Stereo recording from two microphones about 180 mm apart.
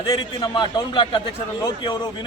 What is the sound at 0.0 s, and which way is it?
A man's voice, 25° left (ahead or behind).